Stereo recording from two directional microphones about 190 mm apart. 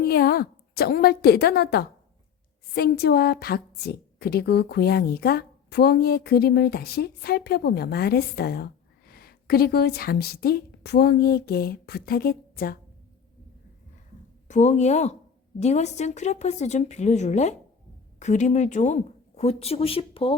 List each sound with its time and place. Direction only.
0.0 s a woman's voice: 55° left (ahead or behind)
14.4 s a woman's voice: 40° left (ahead or behind)